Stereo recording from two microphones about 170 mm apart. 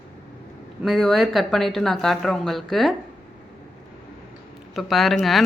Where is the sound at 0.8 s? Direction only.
Centre (ahead or behind).